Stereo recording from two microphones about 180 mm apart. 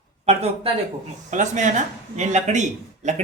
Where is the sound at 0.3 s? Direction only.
35° right (ahead or behind).